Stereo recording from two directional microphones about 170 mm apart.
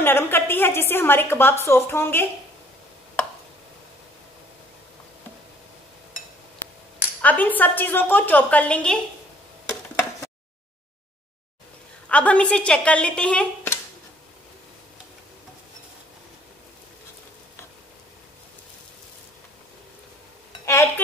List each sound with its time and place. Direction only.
0.0 s a woman's voice: 15° left (ahead or behind)
7.2 s a woman's voice: 10° left (ahead or behind)
12.1 s a woman's voice: 5° left (ahead or behind)
20.6 s a sound: 15° left (ahead or behind)